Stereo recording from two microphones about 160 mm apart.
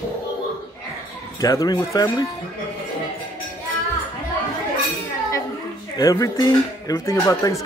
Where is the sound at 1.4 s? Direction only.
20° left (ahead or behind).